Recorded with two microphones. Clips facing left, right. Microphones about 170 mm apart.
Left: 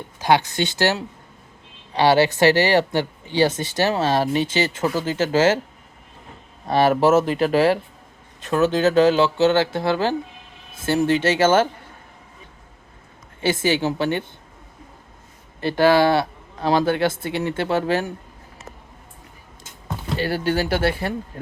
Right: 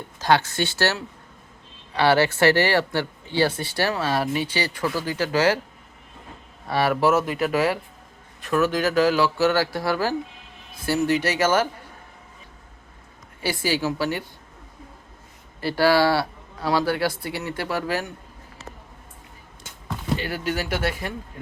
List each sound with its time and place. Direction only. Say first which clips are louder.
0.2 s speech: left 2 dB; 15° left (ahead or behind)
6.7 s speech: left 4 dB; 25° left (ahead or behind)
13.4 s speech: left 4 dB; 20° left (ahead or behind)
15.6 s speech: left 3 dB; 20° left (ahead or behind)
20.1 s speech: left 7 dB; 30° left (ahead or behind)